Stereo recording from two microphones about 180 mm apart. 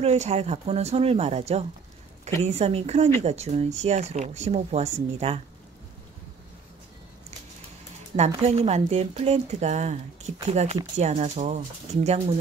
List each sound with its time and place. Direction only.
0.0 s speech: 35° right (ahead or behind)
8.4 s speech: 35° right (ahead or behind)